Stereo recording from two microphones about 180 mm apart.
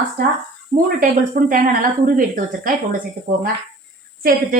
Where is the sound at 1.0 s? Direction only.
50° right (ahead or behind).